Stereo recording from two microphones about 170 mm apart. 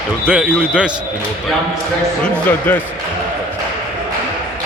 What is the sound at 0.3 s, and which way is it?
Speech, 10° right (ahead or behind).